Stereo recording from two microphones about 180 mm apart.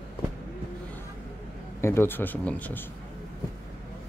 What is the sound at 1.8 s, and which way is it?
Speech, 15° left (ahead or behind).